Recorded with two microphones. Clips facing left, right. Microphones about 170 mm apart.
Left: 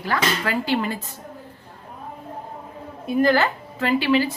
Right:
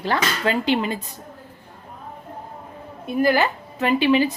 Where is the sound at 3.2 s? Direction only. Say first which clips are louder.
Even; 15° right (ahead or behind).